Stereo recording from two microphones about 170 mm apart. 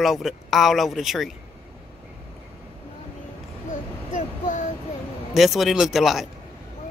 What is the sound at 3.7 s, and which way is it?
Child singing, 50° left (ahead or behind).